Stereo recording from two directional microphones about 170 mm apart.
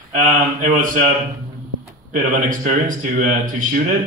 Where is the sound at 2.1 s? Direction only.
50° right (ahead or behind).